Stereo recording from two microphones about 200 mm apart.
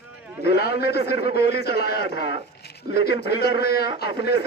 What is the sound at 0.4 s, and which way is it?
Speech, 50° left (ahead or behind).